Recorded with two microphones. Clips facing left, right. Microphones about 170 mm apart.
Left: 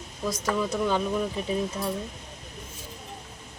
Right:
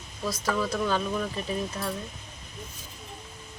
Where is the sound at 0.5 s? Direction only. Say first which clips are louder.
Left 1 dB; 20° left (ahead or behind).